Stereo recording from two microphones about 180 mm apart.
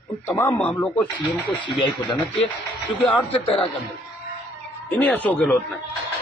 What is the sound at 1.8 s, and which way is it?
Speech, 25° left (ahead or behind).